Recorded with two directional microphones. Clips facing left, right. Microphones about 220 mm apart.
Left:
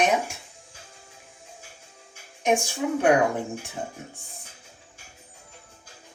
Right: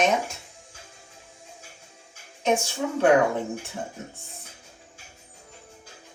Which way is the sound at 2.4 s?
15° left (ahead or behind).